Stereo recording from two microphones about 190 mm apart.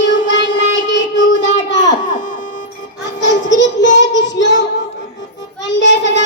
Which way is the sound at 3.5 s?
70° left (ahead or behind).